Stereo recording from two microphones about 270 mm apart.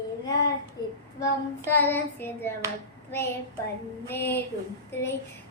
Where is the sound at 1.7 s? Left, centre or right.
Centre.